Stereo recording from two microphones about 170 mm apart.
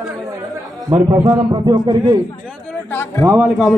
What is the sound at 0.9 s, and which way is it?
A man's voice, 15° right (ahead or behind).